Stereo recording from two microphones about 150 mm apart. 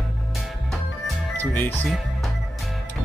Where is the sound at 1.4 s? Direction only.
10° left (ahead or behind).